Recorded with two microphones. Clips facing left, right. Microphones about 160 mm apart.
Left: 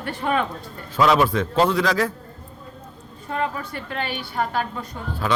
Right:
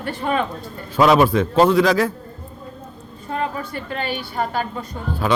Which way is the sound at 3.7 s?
5° right (ahead or behind).